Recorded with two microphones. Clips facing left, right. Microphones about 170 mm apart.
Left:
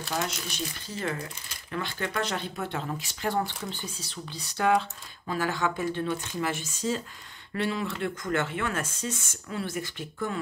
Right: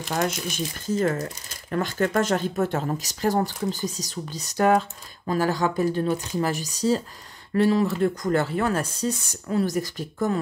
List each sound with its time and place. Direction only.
0.8 s speech: 40° right (ahead or behind)